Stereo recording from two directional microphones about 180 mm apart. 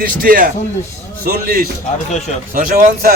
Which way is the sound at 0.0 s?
55° right (ahead or behind).